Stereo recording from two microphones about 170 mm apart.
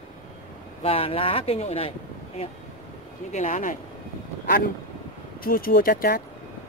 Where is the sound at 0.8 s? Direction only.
35° left (ahead or behind).